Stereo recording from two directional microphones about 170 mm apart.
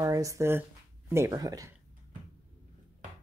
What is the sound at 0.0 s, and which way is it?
Speech, 20° right (ahead or behind).